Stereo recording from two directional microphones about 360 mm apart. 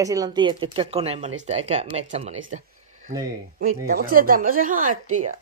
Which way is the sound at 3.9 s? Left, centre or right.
Right.